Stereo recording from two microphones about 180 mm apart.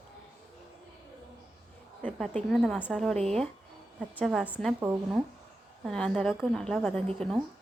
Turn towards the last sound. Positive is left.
turn(degrees=0)  # may be behind; listen again after turning